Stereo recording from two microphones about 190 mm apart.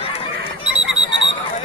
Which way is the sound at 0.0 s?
30° left (ahead or behind).